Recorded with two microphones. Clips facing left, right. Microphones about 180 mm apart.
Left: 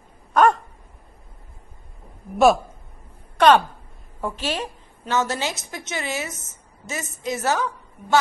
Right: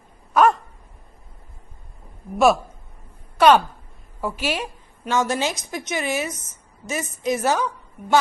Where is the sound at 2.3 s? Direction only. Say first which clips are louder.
Left 1 dB; centre (ahead or behind).